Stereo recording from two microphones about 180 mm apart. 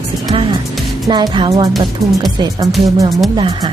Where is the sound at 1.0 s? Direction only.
25° right (ahead or behind).